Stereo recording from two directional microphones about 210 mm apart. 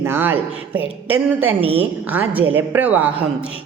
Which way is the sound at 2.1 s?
10° right (ahead or behind).